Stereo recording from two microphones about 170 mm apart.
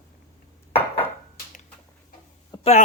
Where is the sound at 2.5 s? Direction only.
25° left (ahead or behind).